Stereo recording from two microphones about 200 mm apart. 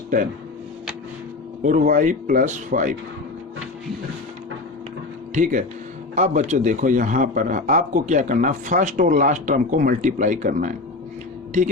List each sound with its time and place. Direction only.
1.6 s a man's voice: 40° right (ahead or behind)
5.3 s a man's voice: 40° right (ahead or behind)